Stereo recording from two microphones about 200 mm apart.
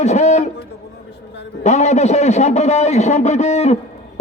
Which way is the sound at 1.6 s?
35° left (ahead or behind).